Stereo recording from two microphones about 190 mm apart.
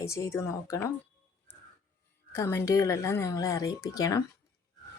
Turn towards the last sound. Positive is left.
turn(degrees=20)  # may be behind; listen again after turning